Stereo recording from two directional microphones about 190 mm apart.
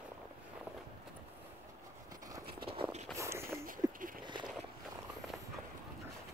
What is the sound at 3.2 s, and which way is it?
Walk, 15° right (ahead or behind).